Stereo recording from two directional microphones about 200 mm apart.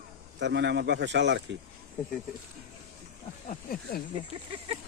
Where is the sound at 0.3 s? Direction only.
60° right (ahead or behind).